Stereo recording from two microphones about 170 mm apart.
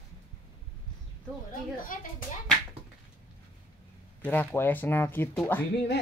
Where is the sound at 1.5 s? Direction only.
55° left (ahead or behind).